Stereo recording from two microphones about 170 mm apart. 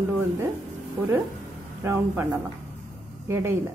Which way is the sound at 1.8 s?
15° right (ahead or behind).